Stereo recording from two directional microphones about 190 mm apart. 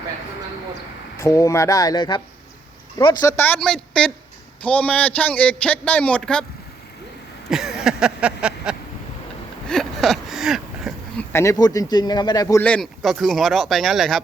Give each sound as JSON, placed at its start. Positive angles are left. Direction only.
{"t": 1.2, "sound": "a man's voice", "side_deg": 15}
{"t": 7.5, "sound": "a sound", "side_deg": -5}
{"t": 11.3, "sound": "speech", "side_deg": 15}
{"t": 12.6, "sound": "speech", "side_deg": 5}